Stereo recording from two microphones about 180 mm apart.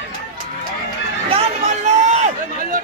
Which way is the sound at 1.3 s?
35° right (ahead or behind).